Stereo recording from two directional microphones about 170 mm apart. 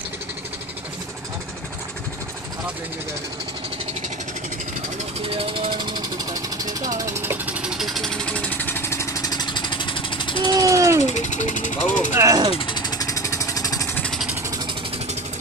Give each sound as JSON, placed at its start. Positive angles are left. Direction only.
{"t": 5.2, "sound": "music", "side_deg": -35}
{"t": 7.0, "sound": "jackhammer", "side_deg": -15}
{"t": 10.4, "sound": "jackhammer", "side_deg": -20}
{"t": 11.1, "sound": "speech", "side_deg": 45}
{"t": 12.1, "sound": "speech", "side_deg": -20}
{"t": 12.5, "sound": "vehicle", "side_deg": 30}
{"t": 14.0, "sound": "vehicle", "side_deg": 0}